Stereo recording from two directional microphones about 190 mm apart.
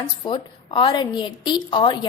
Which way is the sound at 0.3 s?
25° left (ahead or behind).